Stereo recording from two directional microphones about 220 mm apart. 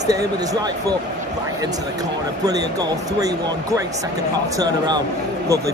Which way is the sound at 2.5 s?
15° right (ahead or behind).